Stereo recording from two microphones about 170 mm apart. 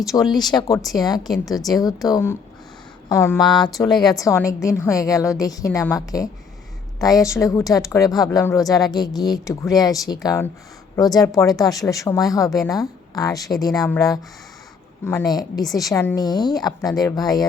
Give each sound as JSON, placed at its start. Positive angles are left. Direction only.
{"t": 0.1, "sound": "a woman's voice", "side_deg": 20}